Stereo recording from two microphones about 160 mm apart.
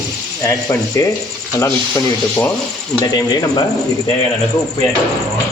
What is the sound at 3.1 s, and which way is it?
Speech, 25° left (ahead or behind).